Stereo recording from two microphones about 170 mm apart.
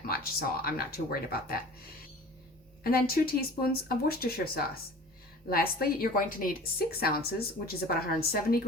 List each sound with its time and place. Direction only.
0.1 s a woman's voice: 60° left (ahead or behind)
2.8 s a woman's voice: 60° left (ahead or behind)